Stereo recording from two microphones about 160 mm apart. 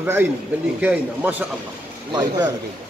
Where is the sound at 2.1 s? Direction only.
25° right (ahead or behind).